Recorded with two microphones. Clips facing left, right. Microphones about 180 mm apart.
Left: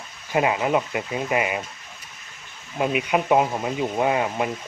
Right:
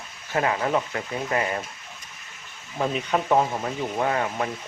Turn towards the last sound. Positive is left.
turn(degrees=15)  # may be behind; listen again after turning